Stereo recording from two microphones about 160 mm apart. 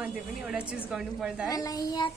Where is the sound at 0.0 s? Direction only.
5° right (ahead or behind).